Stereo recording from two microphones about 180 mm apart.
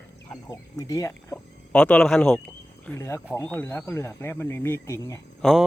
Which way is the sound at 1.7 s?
5° left (ahead or behind).